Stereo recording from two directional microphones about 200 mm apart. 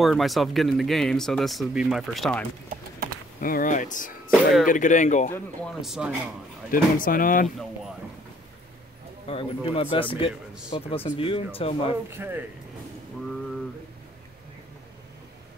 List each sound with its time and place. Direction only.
0.0 s speech: centre (ahead or behind)
3.3 s speech: 45° left (ahead or behind)
5.3 s speech: 5° left (ahead or behind)
6.7 s speech: 45° left (ahead or behind)
7.4 s speech: centre (ahead or behind)
9.3 s speech: 25° left (ahead or behind)
12.2 s speech: 10° right (ahead or behind)